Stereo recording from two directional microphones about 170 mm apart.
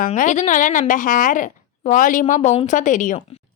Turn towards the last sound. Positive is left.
turn(degrees=50)  # may be behind; listen again after turning